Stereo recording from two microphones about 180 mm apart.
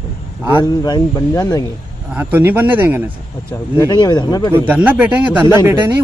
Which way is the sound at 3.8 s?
20° left (ahead or behind).